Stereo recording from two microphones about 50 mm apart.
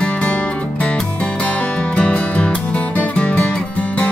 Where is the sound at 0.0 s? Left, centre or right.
Left.